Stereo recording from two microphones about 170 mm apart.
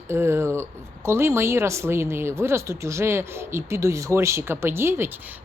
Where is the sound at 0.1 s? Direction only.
15° right (ahead or behind).